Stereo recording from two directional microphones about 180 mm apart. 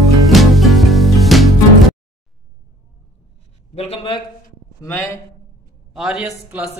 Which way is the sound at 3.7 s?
35° left (ahead or behind).